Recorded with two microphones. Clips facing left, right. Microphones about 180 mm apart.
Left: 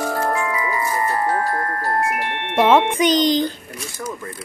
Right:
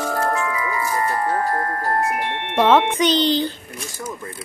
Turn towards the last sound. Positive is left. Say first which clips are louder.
# left 2 dB
turn(degrees=10)  # may be behind; listen again after turning